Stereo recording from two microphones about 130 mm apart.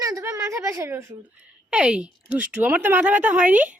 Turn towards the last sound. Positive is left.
turn(degrees=-10)  # may be behind; listen again after turning